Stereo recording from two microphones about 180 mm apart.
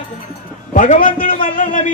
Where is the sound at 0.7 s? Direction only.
45° left (ahead or behind).